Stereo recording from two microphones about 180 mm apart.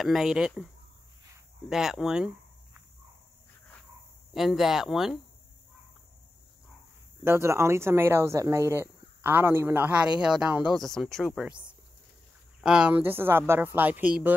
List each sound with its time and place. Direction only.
0.0 s speech: centre (ahead or behind)
4.3 s speech: centre (ahead or behind)
7.2 s a man's voice: 15° right (ahead or behind)
12.6 s a man's voice: 5° right (ahead or behind)